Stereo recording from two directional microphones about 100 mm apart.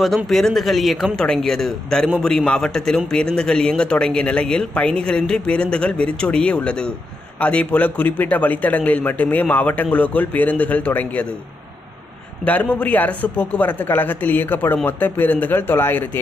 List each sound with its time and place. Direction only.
0.0 s a man's voice: centre (ahead or behind)
12.4 s a man's voice: 15° left (ahead or behind)